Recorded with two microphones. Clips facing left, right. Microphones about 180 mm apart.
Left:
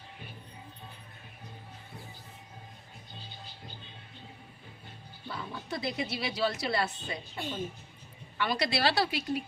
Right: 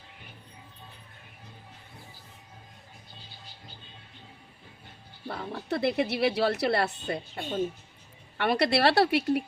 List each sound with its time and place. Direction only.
5.3 s speech: 65° right (ahead or behind)